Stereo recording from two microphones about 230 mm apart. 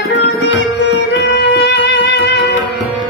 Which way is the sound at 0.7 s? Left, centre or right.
Left.